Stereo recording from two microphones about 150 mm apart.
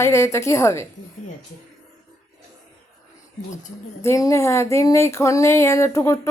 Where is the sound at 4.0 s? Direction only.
20° left (ahead or behind).